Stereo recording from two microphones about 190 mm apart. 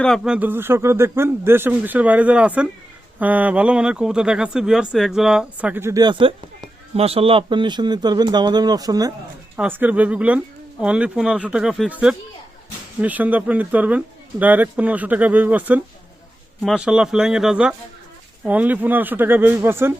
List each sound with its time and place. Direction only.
0.0 s speech: centre (ahead or behind)